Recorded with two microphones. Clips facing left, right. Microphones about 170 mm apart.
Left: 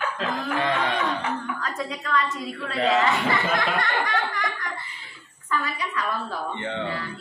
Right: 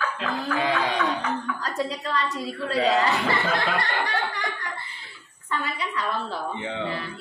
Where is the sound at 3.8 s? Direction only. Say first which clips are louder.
Left 1 dB; 35° right (ahead or behind).